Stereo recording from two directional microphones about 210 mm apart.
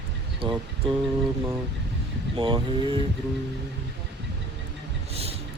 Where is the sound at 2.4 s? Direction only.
25° right (ahead or behind).